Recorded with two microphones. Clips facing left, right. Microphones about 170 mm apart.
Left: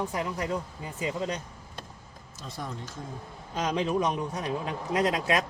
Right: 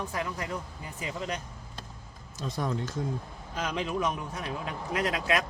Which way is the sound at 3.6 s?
25° left (ahead or behind).